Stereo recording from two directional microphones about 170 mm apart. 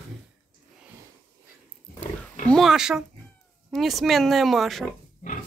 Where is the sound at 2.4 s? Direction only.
Centre (ahead or behind).